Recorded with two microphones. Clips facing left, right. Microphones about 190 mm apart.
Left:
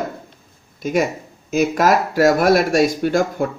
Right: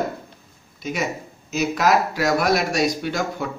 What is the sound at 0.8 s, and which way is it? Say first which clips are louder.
Speech: left 7 dB; 50° left (ahead or behind).